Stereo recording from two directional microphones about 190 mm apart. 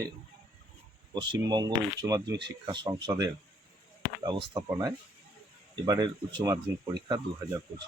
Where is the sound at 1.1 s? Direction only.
25° right (ahead or behind).